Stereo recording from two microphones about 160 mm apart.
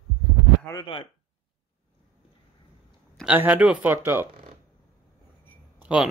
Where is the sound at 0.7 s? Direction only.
25° left (ahead or behind).